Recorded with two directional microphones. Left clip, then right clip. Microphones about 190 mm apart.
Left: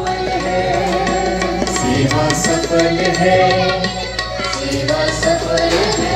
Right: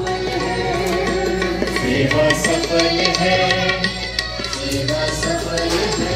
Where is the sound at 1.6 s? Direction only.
65° left (ahead or behind).